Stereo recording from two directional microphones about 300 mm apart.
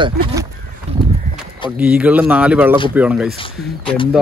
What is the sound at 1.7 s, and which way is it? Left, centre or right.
A man's voice, centre.